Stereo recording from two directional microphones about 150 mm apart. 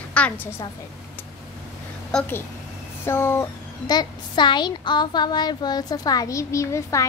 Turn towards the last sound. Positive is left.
turn(degrees=20)  # may be behind; listen again after turning